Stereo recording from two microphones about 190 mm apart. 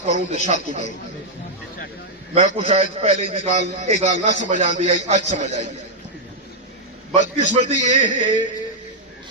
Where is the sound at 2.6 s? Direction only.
30° right (ahead or behind).